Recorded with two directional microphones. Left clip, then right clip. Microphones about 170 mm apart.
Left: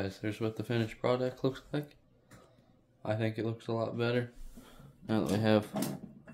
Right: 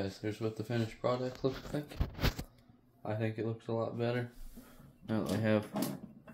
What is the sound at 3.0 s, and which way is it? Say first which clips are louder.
Speech: left 3 dB; 40° left (ahead or behind).